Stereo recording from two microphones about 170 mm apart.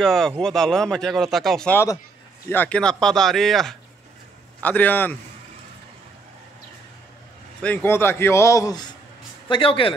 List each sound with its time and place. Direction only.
0.0 s a man's voice: 5° left (ahead or behind)
7.6 s a man's voice: 10° left (ahead or behind)
9.5 s speech: 30° left (ahead or behind)